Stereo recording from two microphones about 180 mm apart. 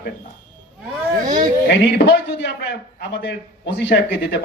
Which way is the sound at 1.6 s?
75° left (ahead or behind).